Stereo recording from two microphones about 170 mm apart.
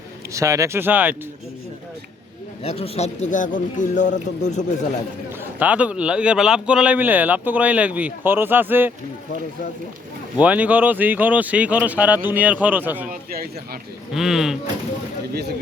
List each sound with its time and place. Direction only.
0.3 s speech: 20° right (ahead or behind)
2.6 s speech: 35° left (ahead or behind)
5.5 s speech: 10° right (ahead or behind)
10.4 s speech: 10° right (ahead or behind)
13.1 s speech: 60° right (ahead or behind)
14.1 s speech: centre (ahead or behind)